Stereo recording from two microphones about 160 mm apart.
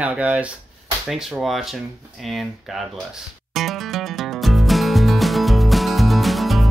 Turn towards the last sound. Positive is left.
turn(degrees=0)  # may be behind; listen again after turning